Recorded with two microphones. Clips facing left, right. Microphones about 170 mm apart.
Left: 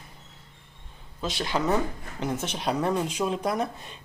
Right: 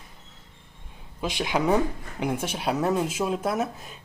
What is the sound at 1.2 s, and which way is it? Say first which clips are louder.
Speech: right 2 dB; 15° right (ahead or behind).